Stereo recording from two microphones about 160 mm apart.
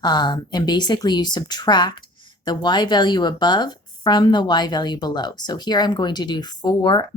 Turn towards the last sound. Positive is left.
turn(degrees=25)  # may be behind; listen again after turning